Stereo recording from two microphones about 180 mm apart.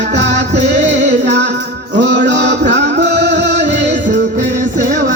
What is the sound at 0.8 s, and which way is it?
Music, 40° right (ahead or behind).